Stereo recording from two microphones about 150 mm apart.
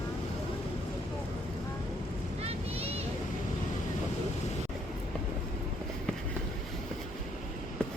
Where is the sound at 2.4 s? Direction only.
45° right (ahead or behind).